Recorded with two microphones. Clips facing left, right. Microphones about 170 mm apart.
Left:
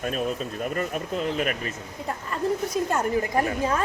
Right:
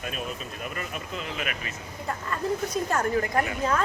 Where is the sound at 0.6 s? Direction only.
40° left (ahead or behind).